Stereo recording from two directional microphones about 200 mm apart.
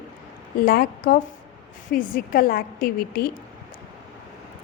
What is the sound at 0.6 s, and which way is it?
A woman's voice, 45° left (ahead or behind).